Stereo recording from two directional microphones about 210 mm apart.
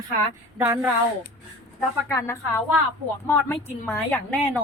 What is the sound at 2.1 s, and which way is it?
A woman's voice, 15° left (ahead or behind).